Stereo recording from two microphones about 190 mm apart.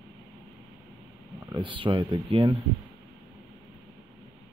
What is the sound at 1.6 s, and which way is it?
Speech, 25° right (ahead or behind).